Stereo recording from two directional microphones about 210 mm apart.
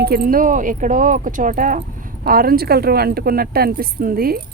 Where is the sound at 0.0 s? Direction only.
45° right (ahead or behind).